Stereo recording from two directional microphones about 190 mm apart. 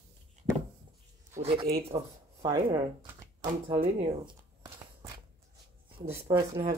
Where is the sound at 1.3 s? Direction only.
30° right (ahead or behind).